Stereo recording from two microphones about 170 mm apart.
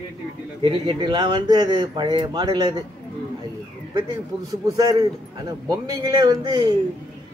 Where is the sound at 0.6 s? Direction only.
30° right (ahead or behind).